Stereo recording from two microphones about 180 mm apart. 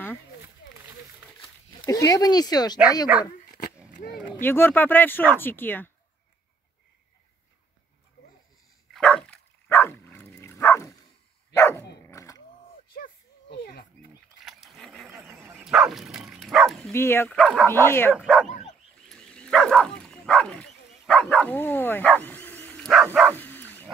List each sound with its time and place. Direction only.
1.4 s speech: 20° left (ahead or behind)
4.4 s speech: 10° left (ahead or behind)
8.9 s dog: 5° left (ahead or behind)
12.1 s music: 15° left (ahead or behind)
12.9 s a sound: 55° left (ahead or behind)
14.4 s wild animals: centre (ahead or behind)
15.5 s bow-wow: 5° right (ahead or behind)
16.9 s speech: 15° left (ahead or behind)
17.6 s speech: 15° left (ahead or behind)
18.1 s speech: centre (ahead or behind)
19.0 s dog: 5° left (ahead or behind)
23.3 s bow-wow: 10° left (ahead or behind)